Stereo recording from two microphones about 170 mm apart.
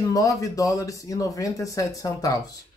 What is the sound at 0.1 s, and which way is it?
Speech, 20° left (ahead or behind).